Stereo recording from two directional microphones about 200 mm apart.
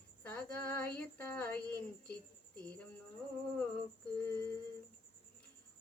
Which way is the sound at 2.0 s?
5° left (ahead or behind).